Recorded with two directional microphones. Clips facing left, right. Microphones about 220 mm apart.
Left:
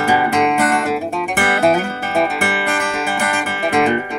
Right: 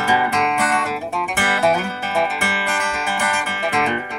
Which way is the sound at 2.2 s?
55° left (ahead or behind).